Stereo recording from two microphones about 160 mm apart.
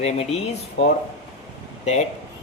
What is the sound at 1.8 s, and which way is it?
Speech, 45° left (ahead or behind).